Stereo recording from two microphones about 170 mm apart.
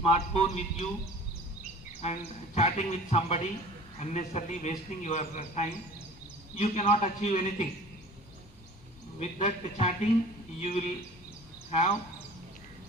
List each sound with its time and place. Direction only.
0.0 s a man's voice: 40° left (ahead or behind)
2.0 s a man's voice: 40° left (ahead or behind)
9.1 s a man's voice: 40° left (ahead or behind)